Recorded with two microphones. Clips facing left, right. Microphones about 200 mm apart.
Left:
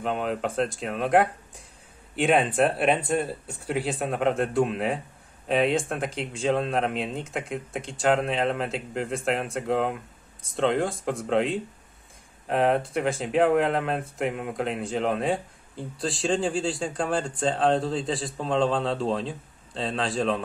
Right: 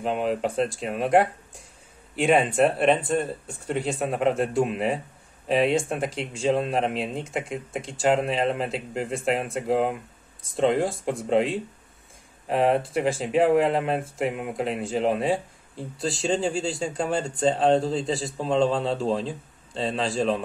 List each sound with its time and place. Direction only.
0.0 s speech: centre (ahead or behind)